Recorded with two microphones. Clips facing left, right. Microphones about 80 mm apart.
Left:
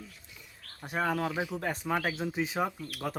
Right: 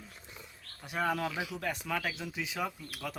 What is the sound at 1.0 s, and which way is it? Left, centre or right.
Speech, left.